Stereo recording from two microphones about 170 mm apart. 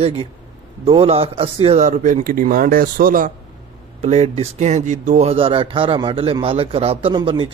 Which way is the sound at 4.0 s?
40° right (ahead or behind).